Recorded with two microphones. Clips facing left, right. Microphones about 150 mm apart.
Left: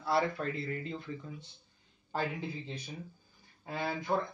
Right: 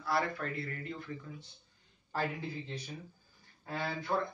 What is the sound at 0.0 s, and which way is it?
Speech, 25° left (ahead or behind).